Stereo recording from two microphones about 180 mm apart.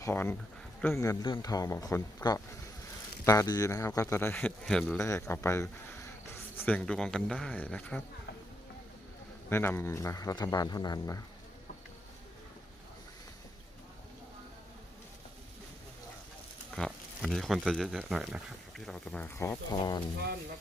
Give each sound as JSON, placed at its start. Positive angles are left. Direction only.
{"t": 0.0, "sound": "speech", "side_deg": 10}
{"t": 4.9, "sound": "speech", "side_deg": 15}
{"t": 9.5, "sound": "speech", "side_deg": 15}
{"t": 16.7, "sound": "speech", "side_deg": 0}